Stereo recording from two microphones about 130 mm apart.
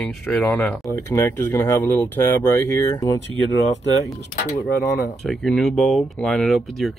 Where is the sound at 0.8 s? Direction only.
25° left (ahead or behind).